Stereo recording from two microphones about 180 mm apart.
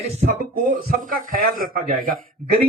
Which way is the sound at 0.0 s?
40° right (ahead or behind).